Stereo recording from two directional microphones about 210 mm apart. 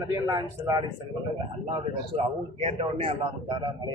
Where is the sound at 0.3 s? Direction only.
20° right (ahead or behind).